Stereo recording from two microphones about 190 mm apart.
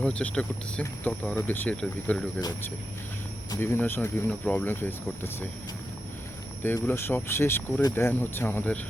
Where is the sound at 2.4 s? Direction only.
20° left (ahead or behind).